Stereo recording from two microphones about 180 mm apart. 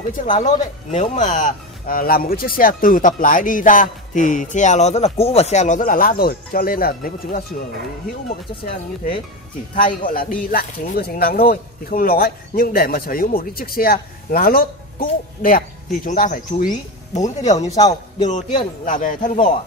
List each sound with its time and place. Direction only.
0.2 s speech: 45° left (ahead or behind)
17.6 s a man's voice: 20° left (ahead or behind)
18.9 s speech: 45° left (ahead or behind)